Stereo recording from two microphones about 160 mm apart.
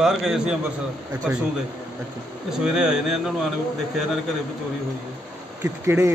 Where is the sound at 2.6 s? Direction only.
5° right (ahead or behind).